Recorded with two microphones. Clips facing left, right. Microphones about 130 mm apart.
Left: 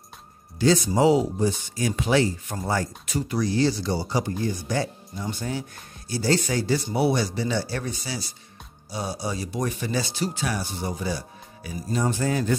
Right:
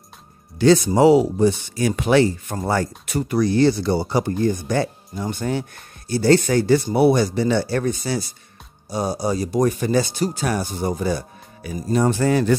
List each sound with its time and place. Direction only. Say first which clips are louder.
0.6 s speech: right 6 dB; 65° right (ahead or behind)